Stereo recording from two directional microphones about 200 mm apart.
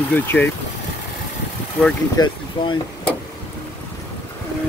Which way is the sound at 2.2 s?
20° left (ahead or behind).